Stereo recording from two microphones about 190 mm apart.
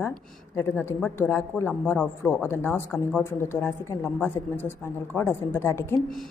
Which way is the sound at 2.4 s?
10° left (ahead or behind).